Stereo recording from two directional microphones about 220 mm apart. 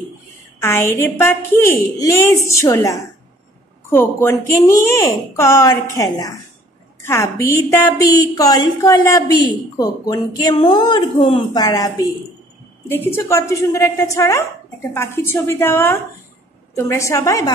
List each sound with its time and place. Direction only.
0.6 s a woman's voice: 10° left (ahead or behind)